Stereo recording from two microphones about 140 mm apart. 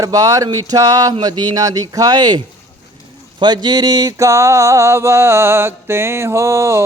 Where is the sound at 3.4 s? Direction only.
30° right (ahead or behind).